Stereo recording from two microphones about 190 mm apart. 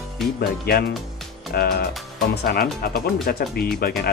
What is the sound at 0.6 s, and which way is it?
Speech, 55° left (ahead or behind).